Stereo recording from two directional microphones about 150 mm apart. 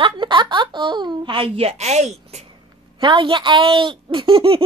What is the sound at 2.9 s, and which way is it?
Speech, 35° right (ahead or behind).